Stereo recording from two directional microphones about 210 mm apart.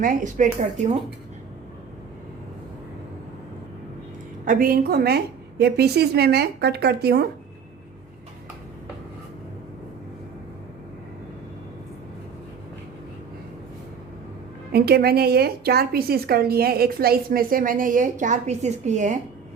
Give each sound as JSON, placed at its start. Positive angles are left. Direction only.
{"t": 0.0, "sound": "speech", "side_deg": -40}
{"t": 4.4, "sound": "a woman's voice", "side_deg": -45}
{"t": 14.7, "sound": "a woman's voice", "side_deg": -50}